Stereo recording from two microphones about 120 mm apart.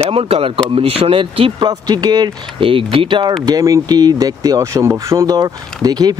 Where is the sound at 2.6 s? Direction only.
50° right (ahead or behind).